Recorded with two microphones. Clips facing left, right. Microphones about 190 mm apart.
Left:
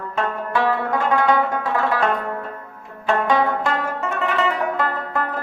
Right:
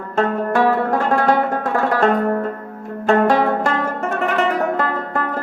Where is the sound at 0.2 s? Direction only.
45° right (ahead or behind).